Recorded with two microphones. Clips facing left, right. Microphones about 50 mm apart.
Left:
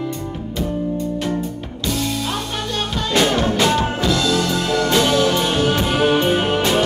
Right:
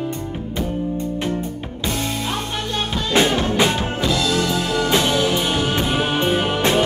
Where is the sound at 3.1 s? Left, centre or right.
Centre.